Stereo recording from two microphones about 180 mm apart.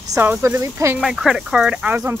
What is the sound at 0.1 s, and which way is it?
Speech, 15° right (ahead or behind).